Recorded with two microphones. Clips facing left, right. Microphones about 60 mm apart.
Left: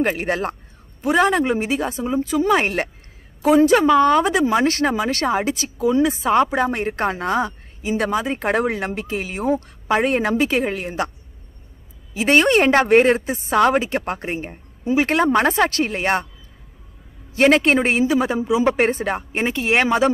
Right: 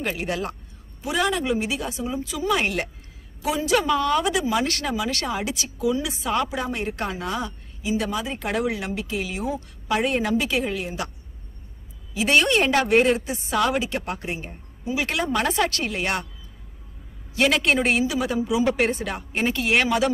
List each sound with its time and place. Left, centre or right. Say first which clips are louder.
0.0 s speech: left 6 dB; left
12.1 s speech: left 4 dB; left
17.4 s speech: left 5 dB; left